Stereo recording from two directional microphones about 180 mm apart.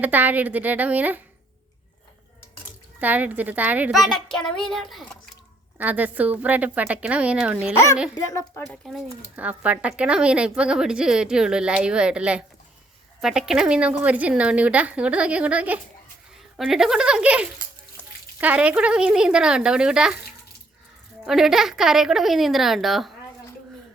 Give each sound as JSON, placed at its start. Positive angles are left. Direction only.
{"t": 0.0, "sound": "a woman's voice", "side_deg": -10}
{"t": 3.0, "sound": "a woman's voice", "side_deg": -10}
{"t": 8.1, "sound": "a woman's voice", "side_deg": 20}
{"t": 8.6, "sound": "a woman's voice", "side_deg": 0}
{"t": 21.2, "sound": "a woman's voice", "side_deg": 0}